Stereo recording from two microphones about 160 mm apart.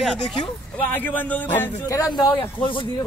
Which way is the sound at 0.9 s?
10° left (ahead or behind).